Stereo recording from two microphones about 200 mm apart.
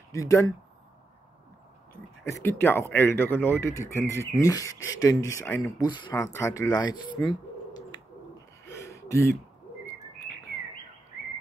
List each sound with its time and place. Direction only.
0.1 s speech: 15° left (ahead or behind)
2.2 s speech: 10° left (ahead or behind)
4.7 s speech: 75° left (ahead or behind)
5.0 s speech: 15° left (ahead or behind)
7.2 s bird: 20° left (ahead or behind)
8.6 s a sound: 15° left (ahead or behind)